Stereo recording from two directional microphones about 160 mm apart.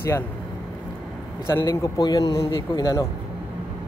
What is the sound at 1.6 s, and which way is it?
A man's voice, 25° left (ahead or behind).